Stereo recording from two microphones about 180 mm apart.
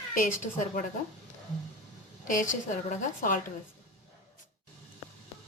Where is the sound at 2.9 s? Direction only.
45° left (ahead or behind).